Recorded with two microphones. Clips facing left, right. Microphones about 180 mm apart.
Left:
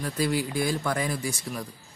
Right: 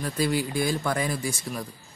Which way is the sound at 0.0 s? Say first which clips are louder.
Right 1 dB; 25° right (ahead or behind).